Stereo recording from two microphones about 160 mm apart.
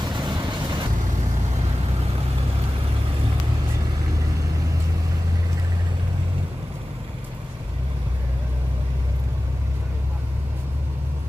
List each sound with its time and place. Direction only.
0.0 s vehicle: 25° right (ahead or behind)